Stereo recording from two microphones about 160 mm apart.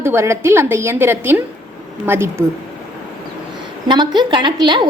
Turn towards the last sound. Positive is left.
turn(degrees=-30)  # may be behind; listen again after turning